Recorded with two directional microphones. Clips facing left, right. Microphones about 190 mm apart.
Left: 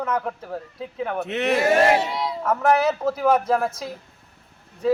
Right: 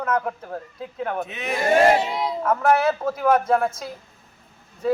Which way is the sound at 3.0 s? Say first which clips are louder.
Even; 5° left (ahead or behind).